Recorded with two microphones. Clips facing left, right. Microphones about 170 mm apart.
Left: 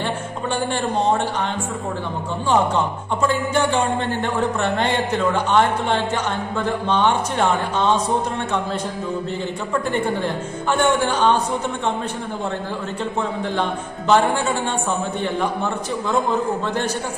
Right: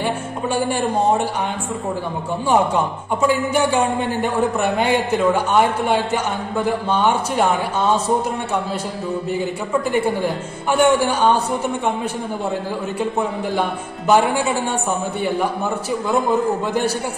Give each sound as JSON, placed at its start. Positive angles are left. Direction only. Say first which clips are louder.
{"t": 0.6, "sound": "speech", "louder": "right 3 dB", "side_deg": -10}
{"t": 2.5, "sound": "speech", "louder": "right 1 dB", "side_deg": -10}
{"t": 9.9, "sound": "speech", "louder": "right 3 dB", "side_deg": -10}
{"t": 13.6, "sound": "speech", "louder": "right 1 dB", "side_deg": -10}